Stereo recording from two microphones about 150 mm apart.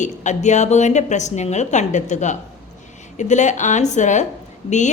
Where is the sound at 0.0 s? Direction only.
55° left (ahead or behind).